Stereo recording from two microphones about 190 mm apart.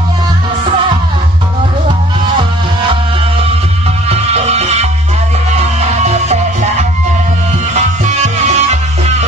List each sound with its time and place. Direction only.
4.1 s music: 35° right (ahead or behind)